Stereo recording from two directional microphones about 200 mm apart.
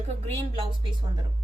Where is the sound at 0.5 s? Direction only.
25° right (ahead or behind).